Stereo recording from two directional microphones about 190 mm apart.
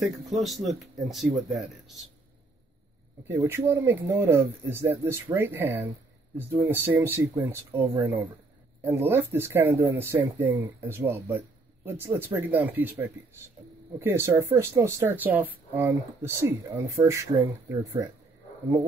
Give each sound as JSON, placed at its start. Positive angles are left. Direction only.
{"t": 0.0, "sound": "speech", "side_deg": 0}
{"t": 3.3, "sound": "speech", "side_deg": -10}